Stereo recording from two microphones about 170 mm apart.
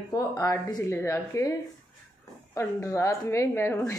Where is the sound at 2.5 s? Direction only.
15° left (ahead or behind).